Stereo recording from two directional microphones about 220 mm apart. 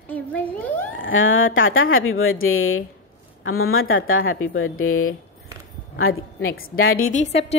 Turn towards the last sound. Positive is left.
turn(degrees=30)  # may be behind; listen again after turning